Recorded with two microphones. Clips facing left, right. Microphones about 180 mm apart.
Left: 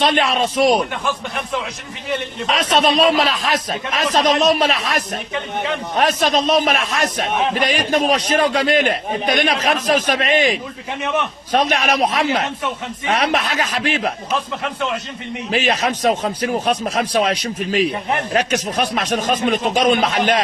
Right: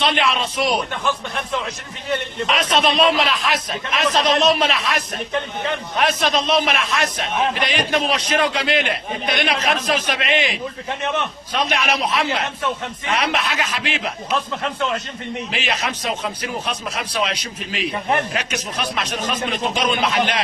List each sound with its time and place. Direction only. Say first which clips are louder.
0.0 s a man's voice: left 3 dB; 45° left (ahead or behind)
2.5 s a man's voice: left 3 dB; 35° left (ahead or behind)
15.5 s a man's voice: left 9 dB; 45° left (ahead or behind)